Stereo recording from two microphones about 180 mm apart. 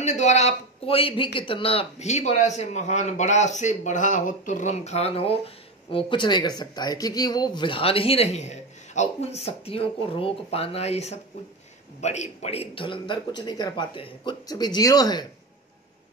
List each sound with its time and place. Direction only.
0.0 s a man's voice: 40° left (ahead or behind); by 15.2 s 20° left (ahead or behind)